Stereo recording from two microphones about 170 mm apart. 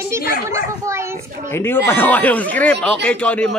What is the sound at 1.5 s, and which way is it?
A man's voice, 15° left (ahead or behind).